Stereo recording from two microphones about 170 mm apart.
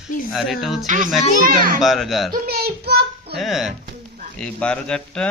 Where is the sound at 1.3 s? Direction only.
55° right (ahead or behind).